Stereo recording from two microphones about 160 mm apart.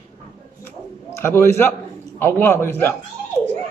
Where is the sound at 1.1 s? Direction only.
15° left (ahead or behind).